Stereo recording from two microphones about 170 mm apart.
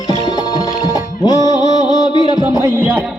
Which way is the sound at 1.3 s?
25° left (ahead or behind).